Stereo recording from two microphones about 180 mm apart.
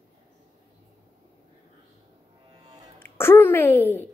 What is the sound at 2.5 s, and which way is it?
Music, 25° right (ahead or behind).